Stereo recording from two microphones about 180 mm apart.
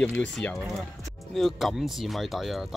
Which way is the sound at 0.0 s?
5° left (ahead or behind).